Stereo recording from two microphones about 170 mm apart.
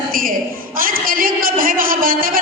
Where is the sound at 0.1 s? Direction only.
55° right (ahead or behind).